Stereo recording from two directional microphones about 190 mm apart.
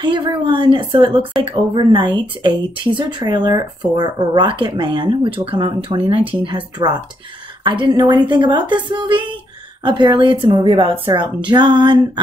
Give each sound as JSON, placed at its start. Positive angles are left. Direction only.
{"t": 0.0, "sound": "a woman's voice", "side_deg": -25}